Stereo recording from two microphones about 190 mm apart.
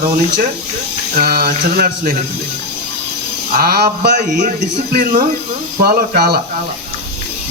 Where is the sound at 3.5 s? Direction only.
55° right (ahead or behind).